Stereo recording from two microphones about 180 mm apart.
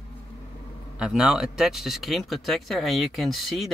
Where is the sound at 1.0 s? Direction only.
5° right (ahead or behind).